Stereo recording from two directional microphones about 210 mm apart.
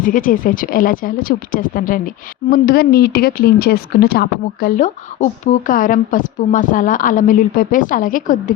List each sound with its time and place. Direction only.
0.0 s speech: 40° left (ahead or behind)